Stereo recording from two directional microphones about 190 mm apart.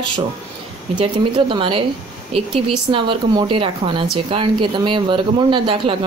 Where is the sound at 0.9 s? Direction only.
25° right (ahead or behind).